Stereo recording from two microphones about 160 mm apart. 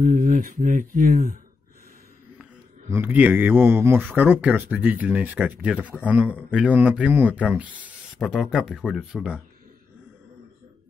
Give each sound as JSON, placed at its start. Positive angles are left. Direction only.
{"t": 0.0, "sound": "speech", "side_deg": -50}
{"t": 2.9, "sound": "speech", "side_deg": -10}